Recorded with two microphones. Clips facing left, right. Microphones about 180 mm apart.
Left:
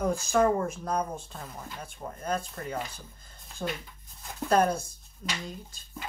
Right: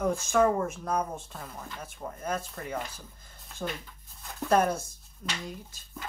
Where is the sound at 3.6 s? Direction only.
10° left (ahead or behind).